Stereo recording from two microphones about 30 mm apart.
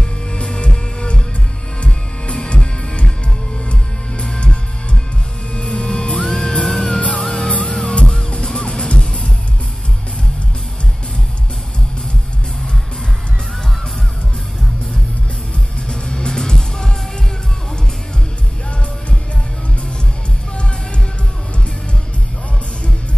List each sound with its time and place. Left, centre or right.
0.3 s music: left
5.5 s music: left
8.5 s music: left
15.9 s music: left